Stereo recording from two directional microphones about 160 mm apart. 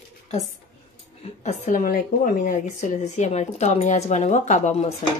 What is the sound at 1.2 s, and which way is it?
A woman's voice, 45° left (ahead or behind).